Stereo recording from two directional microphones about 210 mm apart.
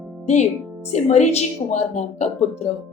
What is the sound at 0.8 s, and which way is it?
Speech, 35° left (ahead or behind).